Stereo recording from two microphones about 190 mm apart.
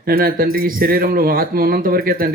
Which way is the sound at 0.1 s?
50° right (ahead or behind).